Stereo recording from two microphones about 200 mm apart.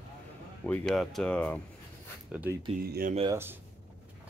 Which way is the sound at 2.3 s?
10° right (ahead or behind).